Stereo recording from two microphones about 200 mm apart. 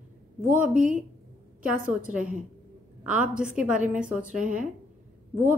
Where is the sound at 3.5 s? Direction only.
5° right (ahead or behind).